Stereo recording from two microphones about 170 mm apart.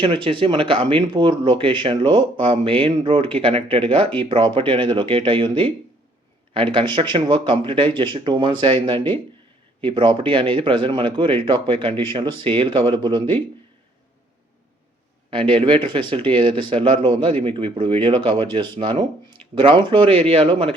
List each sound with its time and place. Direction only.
0.0 s a man's voice: 30° right (ahead or behind)
15.3 s a man's voice: 30° right (ahead or behind)